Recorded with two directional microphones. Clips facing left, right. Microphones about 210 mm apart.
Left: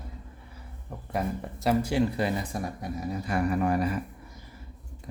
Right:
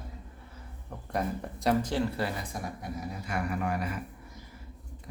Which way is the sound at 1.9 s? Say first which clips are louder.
Left 4 dB; 15° left (ahead or behind).